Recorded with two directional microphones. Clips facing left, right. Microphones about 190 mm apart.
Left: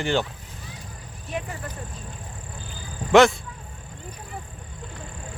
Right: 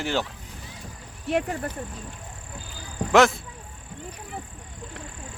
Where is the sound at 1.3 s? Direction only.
65° right (ahead or behind).